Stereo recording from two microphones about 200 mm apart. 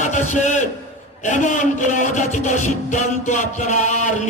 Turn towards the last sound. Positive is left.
turn(degrees=35)  # may be behind; listen again after turning